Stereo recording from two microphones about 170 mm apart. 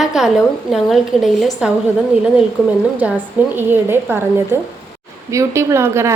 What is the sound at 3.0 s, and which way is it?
A woman's voice, 10° right (ahead or behind).